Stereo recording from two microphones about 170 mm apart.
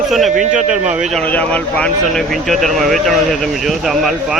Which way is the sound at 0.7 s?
5° right (ahead or behind).